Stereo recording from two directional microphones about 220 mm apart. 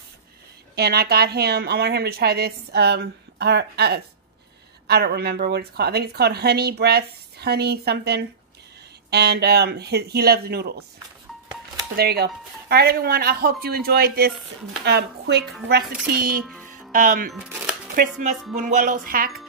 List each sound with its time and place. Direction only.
0.7 s a woman's voice: 45° right (ahead or behind)
11.9 s a woman's voice: 45° right (ahead or behind)
15.8 s speech: 5° right (ahead or behind)
16.4 s music: centre (ahead or behind)
16.9 s speech: 35° right (ahead or behind)
18.6 s speech: 35° right (ahead or behind)